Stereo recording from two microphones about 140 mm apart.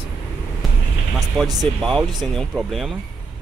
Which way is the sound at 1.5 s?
Centre (ahead or behind).